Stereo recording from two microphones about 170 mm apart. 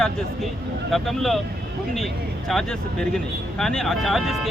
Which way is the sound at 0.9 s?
Centre (ahead or behind).